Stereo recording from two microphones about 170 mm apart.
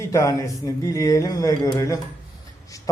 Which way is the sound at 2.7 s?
20° left (ahead or behind).